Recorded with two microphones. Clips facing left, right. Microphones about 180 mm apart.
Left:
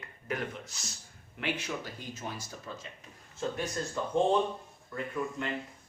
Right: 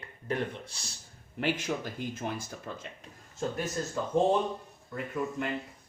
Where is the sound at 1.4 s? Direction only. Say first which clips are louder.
Right 4 dB; 40° right (ahead or behind).